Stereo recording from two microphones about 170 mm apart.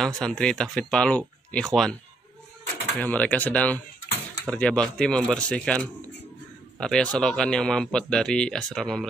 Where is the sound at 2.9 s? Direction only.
10° left (ahead or behind).